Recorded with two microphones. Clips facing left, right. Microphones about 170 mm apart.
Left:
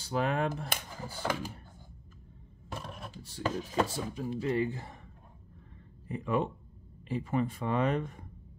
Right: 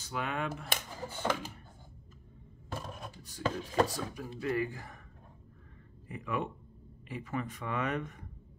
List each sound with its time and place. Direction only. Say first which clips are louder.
0.0 s speech: left 6 dB; 35° left (ahead or behind)
3.2 s speech: left 1 dB; 30° left (ahead or behind)
6.0 s speech: left 5 dB; 30° left (ahead or behind)